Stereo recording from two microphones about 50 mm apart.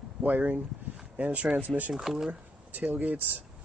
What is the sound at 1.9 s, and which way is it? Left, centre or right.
Speech, centre.